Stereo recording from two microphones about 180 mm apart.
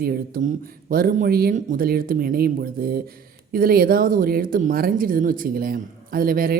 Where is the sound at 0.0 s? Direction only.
55° right (ahead or behind).